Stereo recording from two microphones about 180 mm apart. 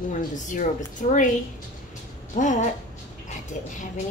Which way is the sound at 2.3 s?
45° left (ahead or behind).